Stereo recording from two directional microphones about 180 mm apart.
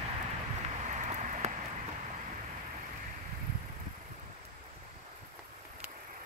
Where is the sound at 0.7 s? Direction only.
40° right (ahead or behind).